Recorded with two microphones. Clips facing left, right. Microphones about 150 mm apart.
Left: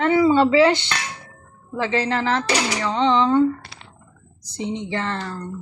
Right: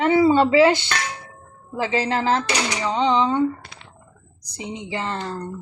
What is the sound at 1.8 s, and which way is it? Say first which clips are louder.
Speech: even; 25° right (ahead or behind).